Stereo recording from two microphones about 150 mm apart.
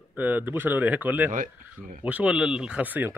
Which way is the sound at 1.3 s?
60° right (ahead or behind).